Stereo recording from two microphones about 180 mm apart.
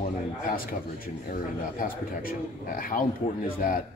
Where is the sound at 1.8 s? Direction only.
50° left (ahead or behind).